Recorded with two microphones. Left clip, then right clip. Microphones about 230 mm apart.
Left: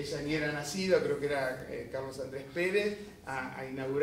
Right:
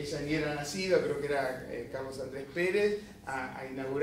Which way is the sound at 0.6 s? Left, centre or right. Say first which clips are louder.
Even; left.